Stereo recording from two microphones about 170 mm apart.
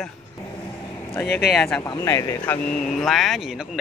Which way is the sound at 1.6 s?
15° left (ahead or behind).